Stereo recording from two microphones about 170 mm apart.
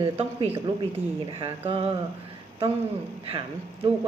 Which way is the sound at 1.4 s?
35° right (ahead or behind).